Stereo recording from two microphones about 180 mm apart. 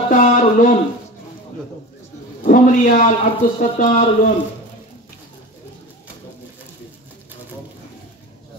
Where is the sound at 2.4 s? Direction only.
45° left (ahead or behind).